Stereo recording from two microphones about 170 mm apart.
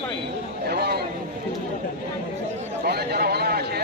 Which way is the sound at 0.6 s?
70° right (ahead or behind).